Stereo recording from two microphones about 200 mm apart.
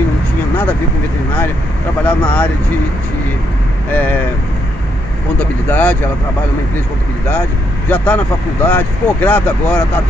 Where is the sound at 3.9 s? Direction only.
10° left (ahead or behind).